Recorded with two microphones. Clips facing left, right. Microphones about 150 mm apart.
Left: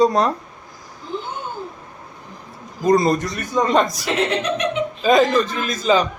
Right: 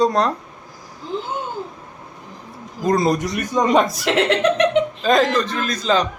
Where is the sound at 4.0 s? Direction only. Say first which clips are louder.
Right 4 dB; 85° right.